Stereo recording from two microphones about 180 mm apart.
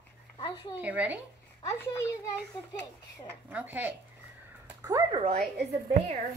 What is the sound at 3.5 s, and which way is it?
Speech, 10° right (ahead or behind).